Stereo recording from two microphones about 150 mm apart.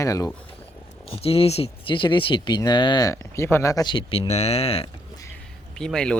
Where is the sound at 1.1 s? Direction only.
40° left (ahead or behind).